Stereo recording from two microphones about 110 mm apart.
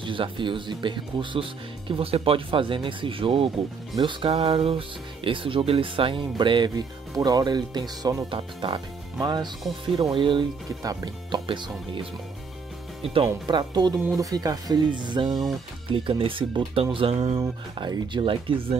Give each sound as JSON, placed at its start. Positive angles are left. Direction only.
{"t": 0.0, "sound": "speech", "side_deg": -50}
{"t": 4.3, "sound": "speech", "side_deg": -65}
{"t": 8.3, "sound": "speech", "side_deg": -50}
{"t": 10.8, "sound": "speech", "side_deg": -35}
{"t": 11.3, "sound": "speech", "side_deg": -50}
{"t": 17.7, "sound": "speech", "side_deg": -50}